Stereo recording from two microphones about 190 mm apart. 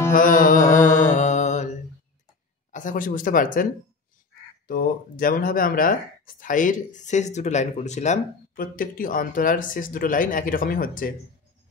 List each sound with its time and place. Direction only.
0.1 s music: 45° left (ahead or behind)
2.7 s speech: 45° left (ahead or behind)
4.6 s speech: 50° left (ahead or behind)